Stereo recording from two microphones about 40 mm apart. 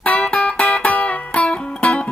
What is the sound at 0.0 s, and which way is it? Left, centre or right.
Music, left.